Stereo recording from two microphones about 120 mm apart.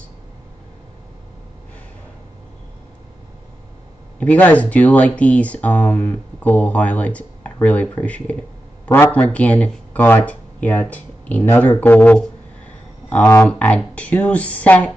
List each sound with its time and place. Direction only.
4.2 s speech: 10° left (ahead or behind)